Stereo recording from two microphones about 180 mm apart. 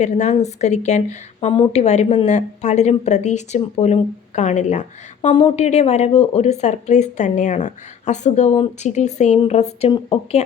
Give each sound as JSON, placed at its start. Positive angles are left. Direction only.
{"t": 0.0, "sound": "speech", "side_deg": 40}
{"t": 5.3, "sound": "a woman's voice", "side_deg": 25}
{"t": 5.6, "sound": "speech", "side_deg": 40}